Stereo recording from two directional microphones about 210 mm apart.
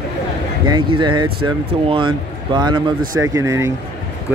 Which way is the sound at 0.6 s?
20° right (ahead or behind).